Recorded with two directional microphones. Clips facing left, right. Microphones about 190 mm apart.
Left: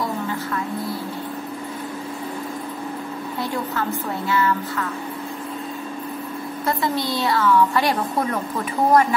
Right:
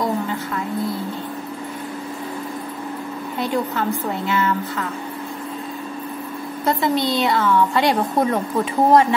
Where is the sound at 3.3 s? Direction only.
20° right (ahead or behind).